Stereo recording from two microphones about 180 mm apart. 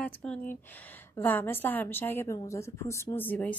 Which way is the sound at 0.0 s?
5° left (ahead or behind).